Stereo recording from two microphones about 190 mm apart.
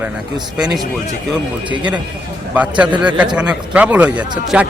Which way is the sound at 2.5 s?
10° right (ahead or behind).